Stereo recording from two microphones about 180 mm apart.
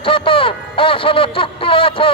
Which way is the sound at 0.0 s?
30° left (ahead or behind).